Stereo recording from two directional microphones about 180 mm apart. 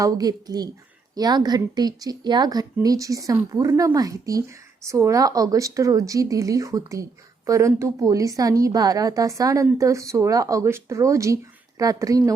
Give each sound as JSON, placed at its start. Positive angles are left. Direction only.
{"t": 0.0, "sound": "a woman's voice", "side_deg": -20}